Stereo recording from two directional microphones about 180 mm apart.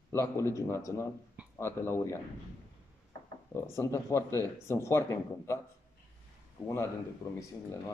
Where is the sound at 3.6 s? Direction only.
15° left (ahead or behind).